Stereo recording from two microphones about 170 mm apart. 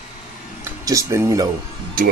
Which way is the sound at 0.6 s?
20° right (ahead or behind).